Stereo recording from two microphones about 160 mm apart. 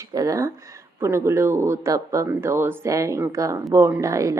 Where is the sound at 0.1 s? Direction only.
20° right (ahead or behind).